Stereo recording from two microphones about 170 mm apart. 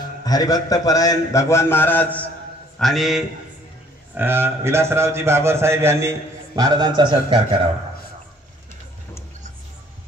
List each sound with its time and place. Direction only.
0.2 s a man's voice: 20° left (ahead or behind)
2.8 s a man's voice: centre (ahead or behind)
4.1 s a man's voice: 15° right (ahead or behind); by 7.6 s 30° right (ahead or behind)